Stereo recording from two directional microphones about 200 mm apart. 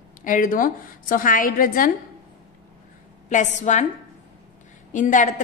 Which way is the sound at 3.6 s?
35° left (ahead or behind).